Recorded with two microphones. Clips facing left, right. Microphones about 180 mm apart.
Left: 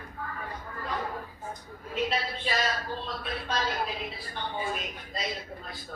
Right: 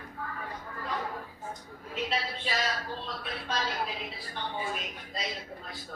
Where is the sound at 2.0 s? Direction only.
50° left (ahead or behind).